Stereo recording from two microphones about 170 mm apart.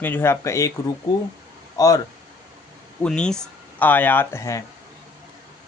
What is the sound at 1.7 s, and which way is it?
Speech, 20° left (ahead or behind).